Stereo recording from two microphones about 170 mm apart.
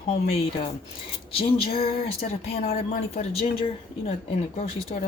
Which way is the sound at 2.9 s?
35° left (ahead or behind).